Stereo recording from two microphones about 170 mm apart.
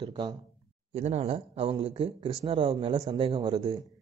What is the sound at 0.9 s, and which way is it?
Speech, 40° right (ahead or behind).